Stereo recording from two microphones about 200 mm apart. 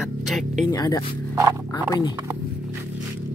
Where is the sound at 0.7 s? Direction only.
20° left (ahead or behind).